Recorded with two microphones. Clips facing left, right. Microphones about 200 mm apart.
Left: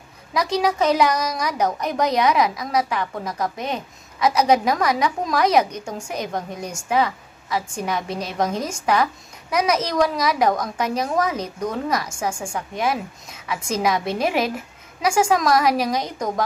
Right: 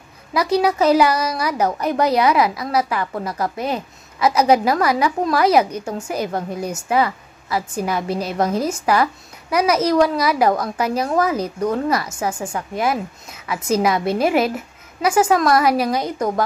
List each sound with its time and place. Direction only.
0.3 s a woman's voice: 5° right (ahead or behind)